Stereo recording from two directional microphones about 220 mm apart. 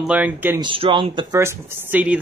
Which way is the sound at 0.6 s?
25° right (ahead or behind).